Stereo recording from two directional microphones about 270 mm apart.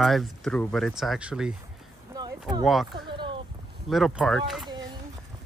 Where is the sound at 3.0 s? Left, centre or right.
Centre.